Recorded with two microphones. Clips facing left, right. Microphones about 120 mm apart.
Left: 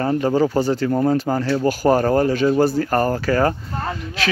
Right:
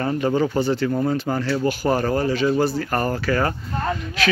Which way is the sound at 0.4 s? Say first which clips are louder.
Left 2 dB; 40° left (ahead or behind).